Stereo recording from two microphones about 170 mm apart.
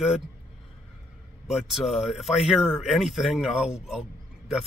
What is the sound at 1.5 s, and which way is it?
Speech, centre (ahead or behind).